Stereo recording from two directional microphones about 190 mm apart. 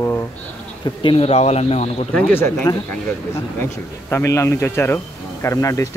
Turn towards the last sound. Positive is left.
turn(degrees=15)  # may be behind; listen again after turning